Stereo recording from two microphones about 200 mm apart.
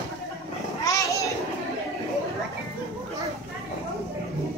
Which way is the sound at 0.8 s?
15° left (ahead or behind).